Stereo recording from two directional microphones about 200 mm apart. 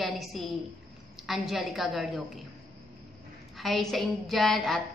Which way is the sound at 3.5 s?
Centre (ahead or behind).